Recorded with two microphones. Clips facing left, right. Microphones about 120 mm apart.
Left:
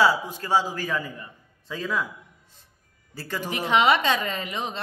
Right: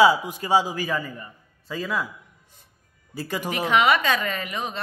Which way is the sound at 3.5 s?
20° left (ahead or behind).